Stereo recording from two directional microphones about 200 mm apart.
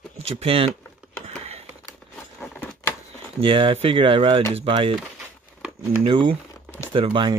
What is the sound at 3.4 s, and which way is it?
Speech, 25° right (ahead or behind).